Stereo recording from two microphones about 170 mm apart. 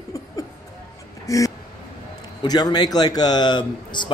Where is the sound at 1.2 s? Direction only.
20° left (ahead or behind).